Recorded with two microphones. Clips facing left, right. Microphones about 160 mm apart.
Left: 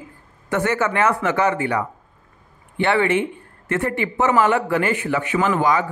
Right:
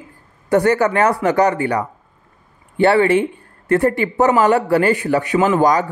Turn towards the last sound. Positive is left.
turn(degrees=-40)  # may be behind; listen again after turning